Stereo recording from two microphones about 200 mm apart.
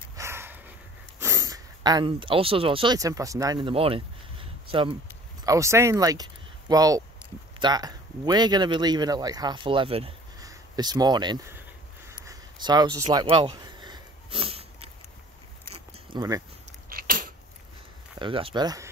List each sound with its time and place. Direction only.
0.1 s dog: 15° right (ahead or behind)
1.2 s speech: 15° right (ahead or behind)
5.4 s speech: 15° right (ahead or behind)
10.4 s a sound: 20° right (ahead or behind)
16.9 s a sound: 45° right (ahead or behind)
18.2 s speech: 25° right (ahead or behind)